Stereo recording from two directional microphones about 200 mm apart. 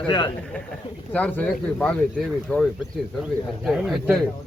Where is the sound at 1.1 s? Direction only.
10° left (ahead or behind).